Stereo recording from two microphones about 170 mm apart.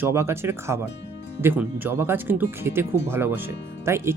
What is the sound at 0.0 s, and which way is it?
Speech, 15° right (ahead or behind).